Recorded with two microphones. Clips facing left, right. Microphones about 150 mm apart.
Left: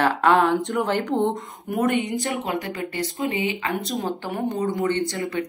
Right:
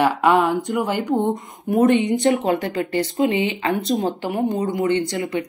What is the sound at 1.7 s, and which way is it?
Speech, 30° right (ahead or behind).